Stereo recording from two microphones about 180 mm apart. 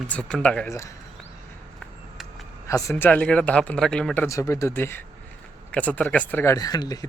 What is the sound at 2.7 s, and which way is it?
Speech, 15° left (ahead or behind).